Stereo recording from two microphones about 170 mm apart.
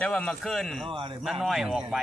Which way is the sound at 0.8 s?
30° right (ahead or behind).